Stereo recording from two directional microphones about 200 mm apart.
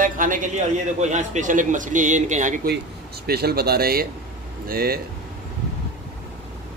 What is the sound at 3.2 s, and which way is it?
A man's voice, 50° right (ahead or behind).